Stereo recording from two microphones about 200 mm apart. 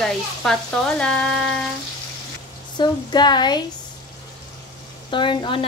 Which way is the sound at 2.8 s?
20° left (ahead or behind).